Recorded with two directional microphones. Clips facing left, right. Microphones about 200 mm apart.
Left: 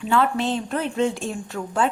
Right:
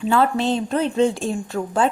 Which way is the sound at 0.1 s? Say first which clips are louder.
Right 2 dB; 35° right (ahead or behind).